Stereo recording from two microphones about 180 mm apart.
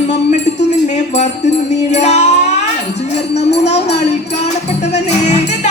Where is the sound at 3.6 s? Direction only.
35° left (ahead or behind).